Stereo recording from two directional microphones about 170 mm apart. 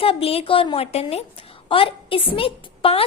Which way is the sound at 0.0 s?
35° left (ahead or behind).